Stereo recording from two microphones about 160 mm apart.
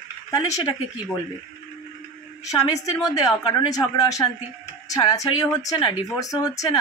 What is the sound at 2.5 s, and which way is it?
Speech, 20° left (ahead or behind).